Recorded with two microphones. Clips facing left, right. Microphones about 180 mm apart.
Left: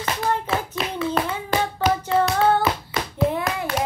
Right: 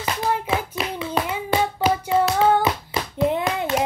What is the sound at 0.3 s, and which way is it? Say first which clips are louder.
Hands: right 1 dB; 10° right (ahead or behind).